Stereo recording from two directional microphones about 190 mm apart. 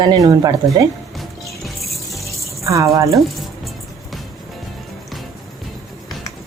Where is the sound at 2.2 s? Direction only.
15° right (ahead or behind).